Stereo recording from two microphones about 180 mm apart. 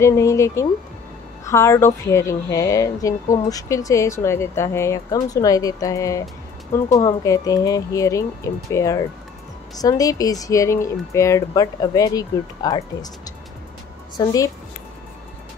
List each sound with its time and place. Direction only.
0.0 s speech: 15° left (ahead or behind)